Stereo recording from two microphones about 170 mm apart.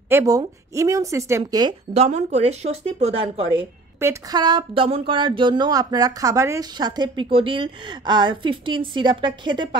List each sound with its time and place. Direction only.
0.1 s speech: 20° right (ahead or behind)
2.0 s speech: 40° right (ahead or behind)
4.0 s speech: 20° right (ahead or behind)